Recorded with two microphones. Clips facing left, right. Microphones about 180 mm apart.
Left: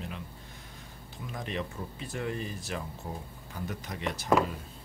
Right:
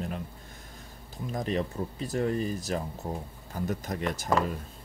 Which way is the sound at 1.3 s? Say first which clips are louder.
Right 6 dB; 40° right (ahead or behind).